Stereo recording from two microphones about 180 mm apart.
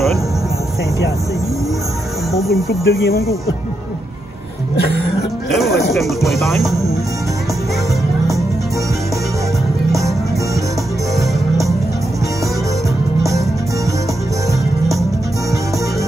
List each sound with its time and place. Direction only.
2.3 s speech: centre (ahead or behind)
2.7 s speech: 60° left (ahead or behind)
5.9 s speech: centre (ahead or behind)
9.9 s music: centre (ahead or behind)